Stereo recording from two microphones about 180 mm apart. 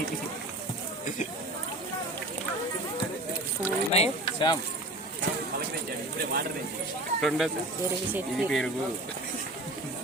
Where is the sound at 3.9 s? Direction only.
30° left (ahead or behind).